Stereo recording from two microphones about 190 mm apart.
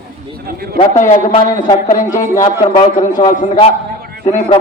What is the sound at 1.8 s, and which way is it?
Speech, 45° left (ahead or behind).